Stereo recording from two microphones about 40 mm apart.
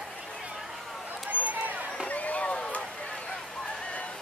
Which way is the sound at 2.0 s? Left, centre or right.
Left.